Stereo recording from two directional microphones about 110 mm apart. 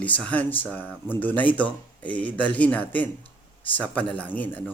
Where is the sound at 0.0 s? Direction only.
15° left (ahead or behind).